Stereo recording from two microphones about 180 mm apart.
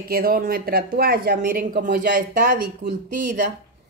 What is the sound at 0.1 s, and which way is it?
Speech, 55° right (ahead or behind).